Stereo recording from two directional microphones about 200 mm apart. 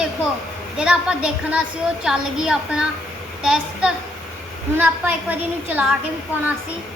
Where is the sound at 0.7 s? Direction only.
5° right (ahead or behind).